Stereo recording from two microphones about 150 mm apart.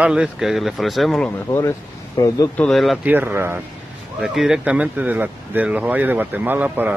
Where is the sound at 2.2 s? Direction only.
20° left (ahead or behind).